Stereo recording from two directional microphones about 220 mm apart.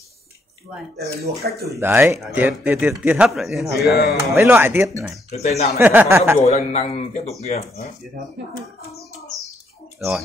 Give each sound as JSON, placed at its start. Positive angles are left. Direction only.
{"t": 0.9, "sound": "speech", "side_deg": -45}
{"t": 1.7, "sound": "a man's voice", "side_deg": -10}
{"t": 4.2, "sound": "speech", "side_deg": -10}
{"t": 5.3, "sound": "speech", "side_deg": 30}
{"t": 5.8, "sound": "speech", "side_deg": -10}
{"t": 6.4, "sound": "speech", "side_deg": 30}
{"t": 9.9, "sound": "speech", "side_deg": 0}